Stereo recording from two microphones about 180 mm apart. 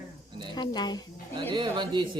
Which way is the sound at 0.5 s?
25° left (ahead or behind).